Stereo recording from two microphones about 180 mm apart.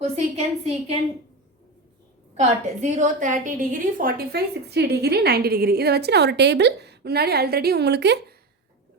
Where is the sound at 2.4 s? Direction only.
40° right (ahead or behind); by 8.3 s 70° right (ahead or behind).